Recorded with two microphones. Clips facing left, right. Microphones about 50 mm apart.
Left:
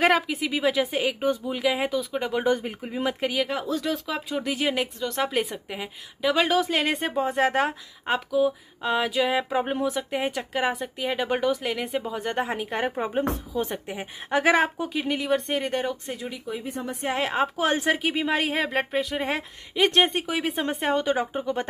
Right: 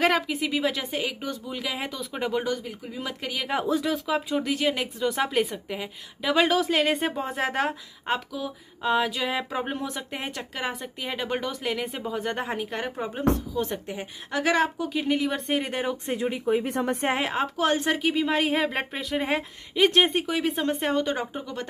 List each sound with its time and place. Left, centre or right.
0.0 s speech: centre
1.2 s speech: left
1.5 s speech: centre
2.4 s speech: left
3.5 s speech: right
3.8 s speech: centre; by 14.9 s left
14.9 s speech: centre
16.1 s speech: right
16.6 s speech: right
17.2 s speech: centre
21.4 s speech: left